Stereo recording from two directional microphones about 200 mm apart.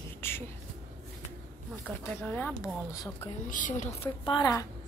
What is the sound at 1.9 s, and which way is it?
Speech, 10° left (ahead or behind).